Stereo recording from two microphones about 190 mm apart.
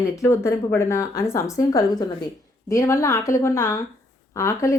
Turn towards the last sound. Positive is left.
turn(degrees=15)  # may be behind; listen again after turning